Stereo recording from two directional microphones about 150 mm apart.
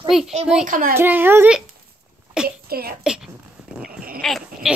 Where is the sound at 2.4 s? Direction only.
90° right.